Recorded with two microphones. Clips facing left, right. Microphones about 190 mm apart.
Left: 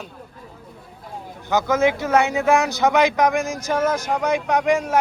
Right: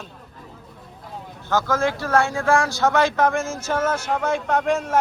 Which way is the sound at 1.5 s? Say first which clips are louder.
Left 3 dB; 20° left (ahead or behind).